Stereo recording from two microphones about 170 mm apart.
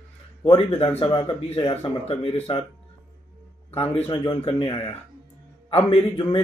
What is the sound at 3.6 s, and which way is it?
Speech, 35° left (ahead or behind).